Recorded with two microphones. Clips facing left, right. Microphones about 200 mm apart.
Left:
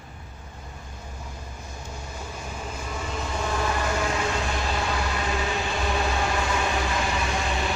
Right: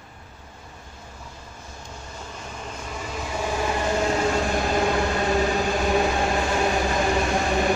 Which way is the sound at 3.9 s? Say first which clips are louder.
Right 4 dB; 35° right (ahead or behind).